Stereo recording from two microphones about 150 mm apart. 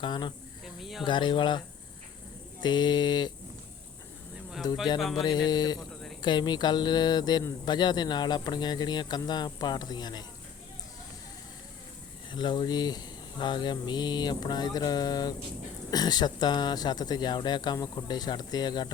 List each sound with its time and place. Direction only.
0.0 s speech: 30° left (ahead or behind)
0.6 s snake: centre (ahead or behind)
1.0 s speech: 30° left (ahead or behind)
4.6 s speech: 25° left (ahead or behind)
12.3 s speech: 30° left (ahead or behind)